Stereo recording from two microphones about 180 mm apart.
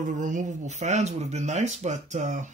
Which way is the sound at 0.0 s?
45° right (ahead or behind).